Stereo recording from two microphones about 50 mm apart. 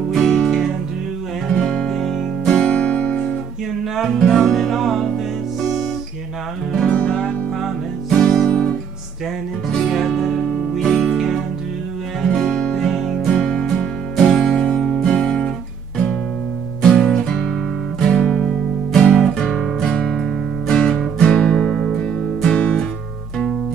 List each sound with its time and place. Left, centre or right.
0.1 s music: centre
1.5 s music: centre
2.5 s music: centre
3.9 s music: centre
6.9 s music: left
8.5 s guitar: left
9.7 s music: centre
12.3 s music: centre
16.8 s music: centre
19.3 s guitar: centre
20.6 s music: centre
21.6 s music: centre